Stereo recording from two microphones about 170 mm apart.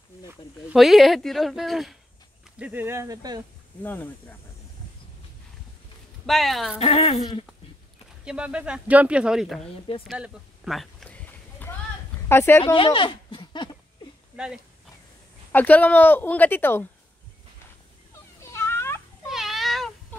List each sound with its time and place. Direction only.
0.3 s speech: 5° right (ahead or behind)
2.6 s speech: 10° right (ahead or behind)
3.8 s a woman's voice: 10° left (ahead or behind)
6.2 s speech: centre (ahead or behind)
6.8 s speech: 35° left (ahead or behind)
8.3 s speech: 5° right (ahead or behind)
10.0 s a sound: 5° right (ahead or behind)
12.3 s a woman's voice: 15° left (ahead or behind)
12.7 s speech: 30° left (ahead or behind)
14.3 s speech: 5° right (ahead or behind)
15.5 s a woman's voice: 10° left (ahead or behind)
18.4 s cat: 15° left (ahead or behind)
19.2 s a sound: centre (ahead or behind)